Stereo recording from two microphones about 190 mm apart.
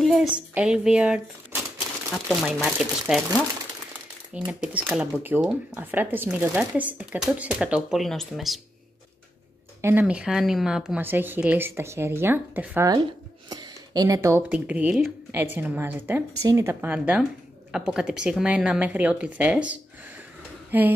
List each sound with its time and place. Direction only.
0.0 s speech: centre (ahead or behind)
4.5 s speech: 5° right (ahead or behind)
9.8 s speech: 10° right (ahead or behind)
20.7 s speech: 10° right (ahead or behind)